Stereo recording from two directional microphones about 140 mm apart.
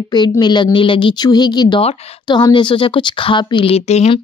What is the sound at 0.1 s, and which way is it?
A woman's voice, 30° left (ahead or behind).